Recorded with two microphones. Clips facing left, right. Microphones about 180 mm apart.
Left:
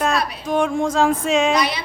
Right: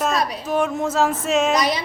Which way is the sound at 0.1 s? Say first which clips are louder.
Even; 40° right (ahead or behind).